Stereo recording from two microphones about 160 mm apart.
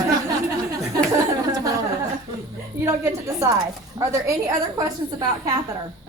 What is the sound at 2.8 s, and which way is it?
A woman's voice, 20° right (ahead or behind).